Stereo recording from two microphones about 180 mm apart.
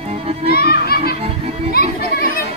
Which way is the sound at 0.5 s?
60° left (ahead or behind).